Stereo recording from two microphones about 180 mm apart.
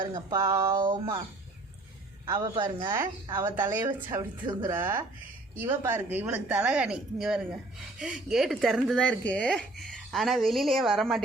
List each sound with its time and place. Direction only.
0.0 s a woman's voice: 20° right (ahead or behind)
0.9 s a woman's voice: 25° right (ahead or behind)
2.3 s a woman's voice: 25° right (ahead or behind)
3.3 s speech: 10° right (ahead or behind)